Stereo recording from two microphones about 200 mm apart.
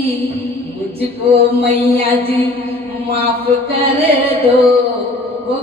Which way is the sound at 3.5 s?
25° right (ahead or behind).